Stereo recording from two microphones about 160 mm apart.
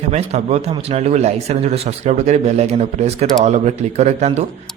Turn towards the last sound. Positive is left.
turn(degrees=-45)  # may be behind; listen again after turning